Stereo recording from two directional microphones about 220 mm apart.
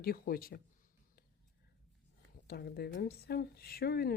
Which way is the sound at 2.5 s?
45° left (ahead or behind).